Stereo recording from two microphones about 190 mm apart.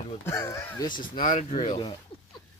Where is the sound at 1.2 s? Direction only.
40° left (ahead or behind).